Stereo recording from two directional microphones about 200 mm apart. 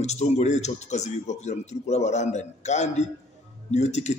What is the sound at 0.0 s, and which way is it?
Speech, 35° left (ahead or behind).